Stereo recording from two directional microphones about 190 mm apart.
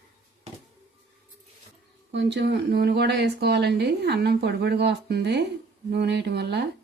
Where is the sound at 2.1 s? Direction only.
65° right (ahead or behind).